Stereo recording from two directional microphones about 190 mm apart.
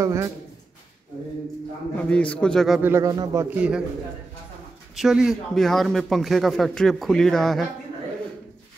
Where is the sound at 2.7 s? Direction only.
10° right (ahead or behind).